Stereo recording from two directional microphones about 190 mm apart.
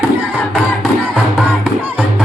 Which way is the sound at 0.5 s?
5° right (ahead or behind).